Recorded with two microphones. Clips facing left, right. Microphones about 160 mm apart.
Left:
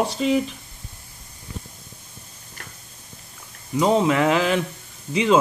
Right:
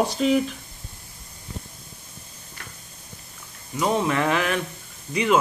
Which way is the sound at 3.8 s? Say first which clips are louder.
Left 4 dB; 25° left (ahead or behind).